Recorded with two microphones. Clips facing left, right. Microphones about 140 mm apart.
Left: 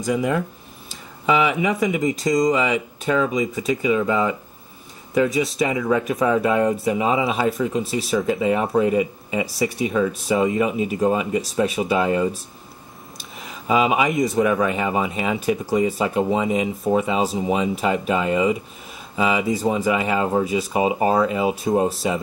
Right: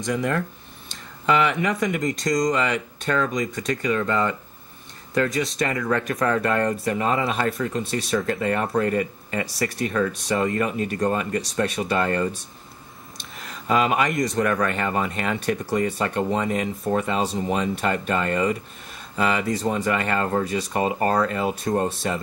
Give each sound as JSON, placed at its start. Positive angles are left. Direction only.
{"t": 0.0, "sound": "speech", "side_deg": 5}